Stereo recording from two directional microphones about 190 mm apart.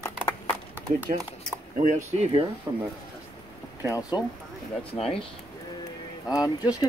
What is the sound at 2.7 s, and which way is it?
Speech, 20° right (ahead or behind).